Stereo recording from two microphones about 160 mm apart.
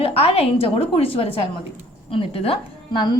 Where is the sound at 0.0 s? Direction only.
40° left (ahead or behind).